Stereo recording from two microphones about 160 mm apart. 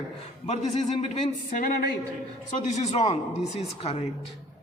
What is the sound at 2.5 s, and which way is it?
A man's voice, 45° left (ahead or behind).